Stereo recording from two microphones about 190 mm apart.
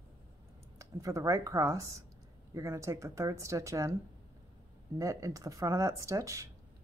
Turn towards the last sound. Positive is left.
turn(degrees=-15)  # may be behind; listen again after turning